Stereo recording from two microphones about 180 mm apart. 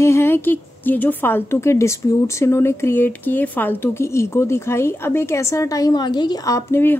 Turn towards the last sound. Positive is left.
turn(degrees=10)  # may be behind; listen again after turning